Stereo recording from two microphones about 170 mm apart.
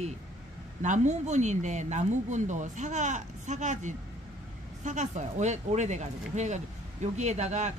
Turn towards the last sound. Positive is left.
turn(degrees=-45)  # may be behind; listen again after turning